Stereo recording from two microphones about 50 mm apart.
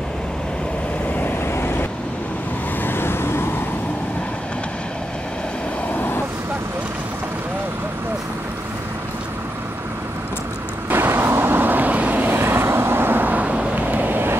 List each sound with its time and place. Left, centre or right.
1.2 s vehicle: left
5.9 s vehicle: left
10.9 s vehicle: right
12.4 s vehicle: right
13.8 s vehicle: right